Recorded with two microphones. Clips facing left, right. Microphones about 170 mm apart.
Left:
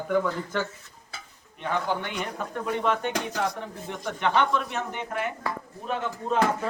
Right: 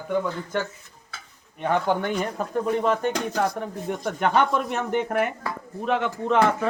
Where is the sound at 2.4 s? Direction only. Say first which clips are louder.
Right 3 dB; 35° right (ahead or behind); by 5.3 s 55° right (ahead or behind).